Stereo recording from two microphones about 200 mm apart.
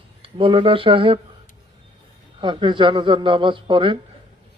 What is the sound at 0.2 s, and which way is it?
Speech, 25° right (ahead or behind).